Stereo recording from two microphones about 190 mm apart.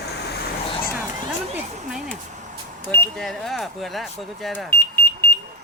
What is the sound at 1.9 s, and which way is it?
Vehicle, 5° right (ahead or behind).